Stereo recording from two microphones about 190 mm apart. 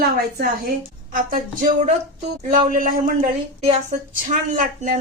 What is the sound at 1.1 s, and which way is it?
Speech, 45° right (ahead or behind).